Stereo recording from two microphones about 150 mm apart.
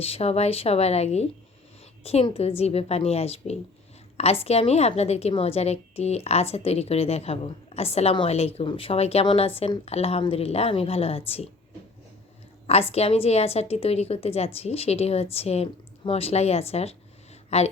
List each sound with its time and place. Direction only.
0.0 s a woman's voice: 40° left (ahead or behind)
12.6 s a woman's voice: 40° left (ahead or behind)